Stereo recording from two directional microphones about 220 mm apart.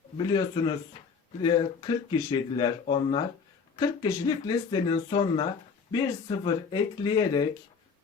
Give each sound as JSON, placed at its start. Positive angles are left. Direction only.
{"t": 0.2, "sound": "speech", "side_deg": 20}